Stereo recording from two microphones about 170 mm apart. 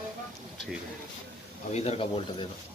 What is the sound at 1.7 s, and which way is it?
Speech, 40° left (ahead or behind).